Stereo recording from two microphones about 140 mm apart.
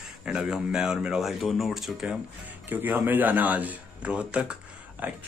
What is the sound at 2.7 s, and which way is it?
Speech, 15° right (ahead or behind).